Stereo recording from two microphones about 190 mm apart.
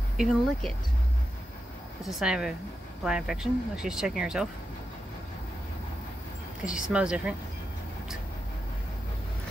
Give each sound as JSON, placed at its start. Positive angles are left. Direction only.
{"t": 0.2, "sound": "speech", "side_deg": 0}
{"t": 2.0, "sound": "speech", "side_deg": 0}
{"t": 6.9, "sound": "speech", "side_deg": -5}